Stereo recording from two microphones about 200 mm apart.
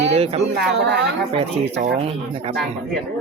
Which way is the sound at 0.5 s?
55° right (ahead or behind).